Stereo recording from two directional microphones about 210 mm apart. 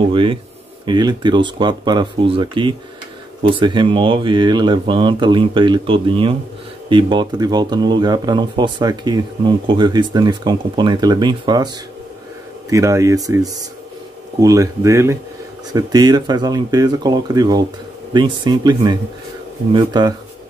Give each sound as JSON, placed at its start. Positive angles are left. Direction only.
{"t": 0.1, "sound": "speech", "side_deg": -25}